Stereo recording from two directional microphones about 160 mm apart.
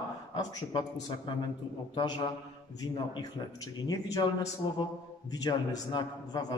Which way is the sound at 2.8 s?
25° left (ahead or behind).